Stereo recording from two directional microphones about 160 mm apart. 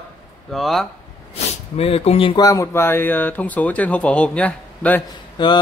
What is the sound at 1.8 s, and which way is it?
Speech, 40° left (ahead or behind).